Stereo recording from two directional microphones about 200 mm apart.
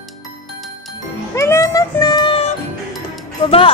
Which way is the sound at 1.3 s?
15° left (ahead or behind).